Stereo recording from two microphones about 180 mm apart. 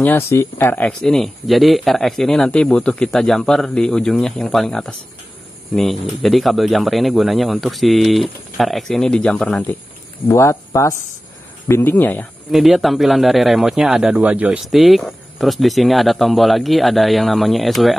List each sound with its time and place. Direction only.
0.0 s speech: 15° left (ahead or behind)